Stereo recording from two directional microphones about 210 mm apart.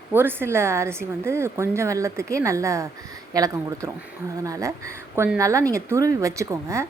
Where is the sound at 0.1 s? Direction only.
10° right (ahead or behind).